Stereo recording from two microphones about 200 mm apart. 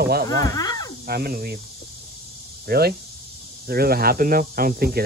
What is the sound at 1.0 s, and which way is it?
Speech, 50° right (ahead or behind).